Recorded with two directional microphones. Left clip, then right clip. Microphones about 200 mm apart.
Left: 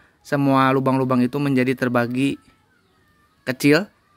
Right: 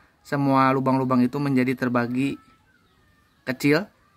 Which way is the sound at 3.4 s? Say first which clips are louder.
Left 4 dB; 25° left (ahead or behind).